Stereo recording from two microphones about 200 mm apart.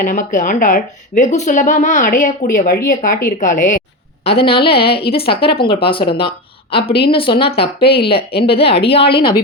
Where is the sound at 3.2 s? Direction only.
40° left (ahead or behind).